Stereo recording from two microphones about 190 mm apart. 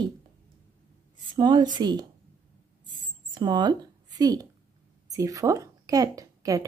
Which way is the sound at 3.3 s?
25° right (ahead or behind).